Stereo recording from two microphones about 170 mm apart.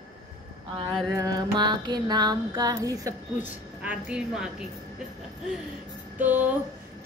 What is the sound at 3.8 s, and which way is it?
Speech, 5° right (ahead or behind).